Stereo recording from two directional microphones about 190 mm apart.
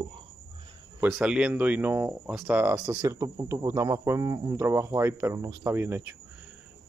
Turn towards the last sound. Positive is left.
turn(degrees=-15)  # may be behind; listen again after turning